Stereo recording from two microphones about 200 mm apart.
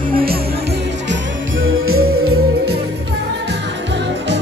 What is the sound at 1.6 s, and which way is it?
Music, 90° right.